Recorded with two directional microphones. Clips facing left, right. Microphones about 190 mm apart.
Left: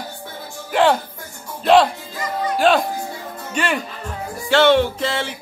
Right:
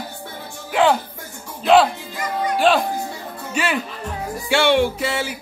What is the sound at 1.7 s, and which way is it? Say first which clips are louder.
Speech: even; centre (ahead or behind).